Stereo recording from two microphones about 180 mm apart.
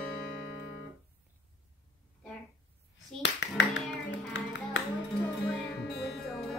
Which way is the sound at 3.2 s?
75° left (ahead or behind).